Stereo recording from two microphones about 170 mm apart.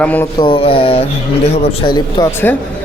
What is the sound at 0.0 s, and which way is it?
Speech, 10° left (ahead or behind).